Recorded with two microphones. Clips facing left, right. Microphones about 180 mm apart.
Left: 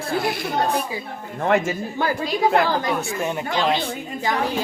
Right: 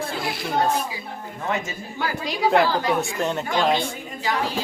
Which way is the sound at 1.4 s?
60° left (ahead or behind).